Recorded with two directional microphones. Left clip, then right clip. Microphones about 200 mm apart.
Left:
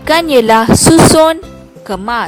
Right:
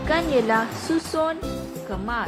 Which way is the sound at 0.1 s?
60° left (ahead or behind).